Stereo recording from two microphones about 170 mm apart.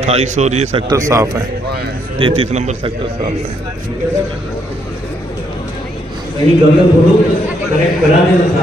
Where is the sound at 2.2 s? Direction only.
30° right (ahead or behind).